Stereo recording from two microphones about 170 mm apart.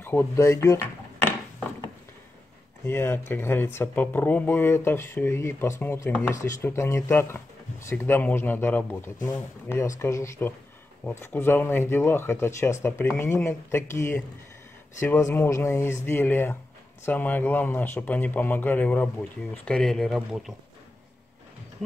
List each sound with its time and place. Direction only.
0.0 s speech: 10° left (ahead or behind)
2.9 s speech: 15° left (ahead or behind)